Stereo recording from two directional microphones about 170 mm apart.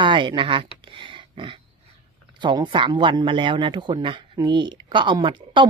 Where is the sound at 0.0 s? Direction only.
30° right (ahead or behind).